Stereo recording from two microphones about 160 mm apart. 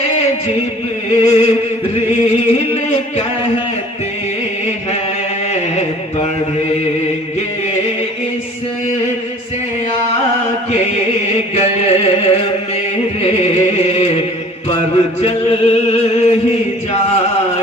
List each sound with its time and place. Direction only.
1.2 s music: 40° left (ahead or behind)
2.5 s a sound: 40° left (ahead or behind)
10.8 s chant: 40° left (ahead or behind)
13.2 s music: 45° left (ahead or behind)
15.2 s male singing: 40° left (ahead or behind)